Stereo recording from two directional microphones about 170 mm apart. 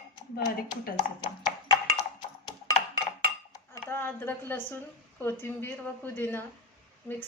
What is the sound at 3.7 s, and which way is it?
Speech, 15° left (ahead or behind).